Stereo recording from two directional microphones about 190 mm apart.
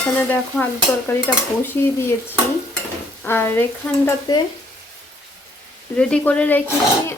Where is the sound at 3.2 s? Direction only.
10° left (ahead or behind).